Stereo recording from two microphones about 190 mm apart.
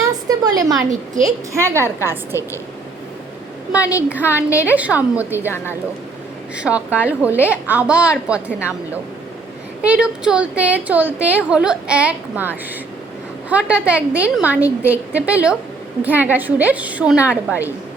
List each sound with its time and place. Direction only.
0.0 s a sound: 20° right (ahead or behind)
1.2 s a woman's voice: 15° right (ahead or behind)
2.3 s a woman's voice: 15° left (ahead or behind)
3.7 s a woman's voice: 5° right (ahead or behind)
9.8 s a woman's voice: 5° right (ahead or behind)